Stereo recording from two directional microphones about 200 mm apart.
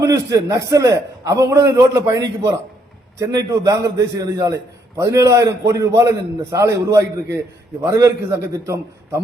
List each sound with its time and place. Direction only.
0.0 s a man's voice: 15° right (ahead or behind)